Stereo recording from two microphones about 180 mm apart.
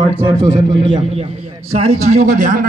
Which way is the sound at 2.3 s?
45° right (ahead or behind).